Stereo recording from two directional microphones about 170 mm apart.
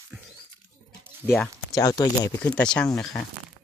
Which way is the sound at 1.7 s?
20° left (ahead or behind).